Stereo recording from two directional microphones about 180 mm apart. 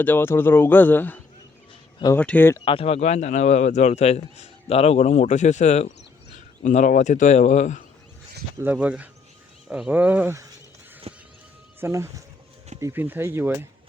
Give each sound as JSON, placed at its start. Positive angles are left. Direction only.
{"t": 0.0, "sound": "speech", "side_deg": 10}
{"t": 2.6, "sound": "speech", "side_deg": 30}
{"t": 8.6, "sound": "speech", "side_deg": -5}
{"t": 11.1, "sound": "a sound", "side_deg": -35}
{"t": 11.8, "sound": "speech", "side_deg": -15}